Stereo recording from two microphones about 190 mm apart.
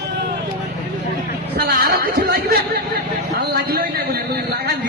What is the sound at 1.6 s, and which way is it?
Speech, 55° right (ahead or behind).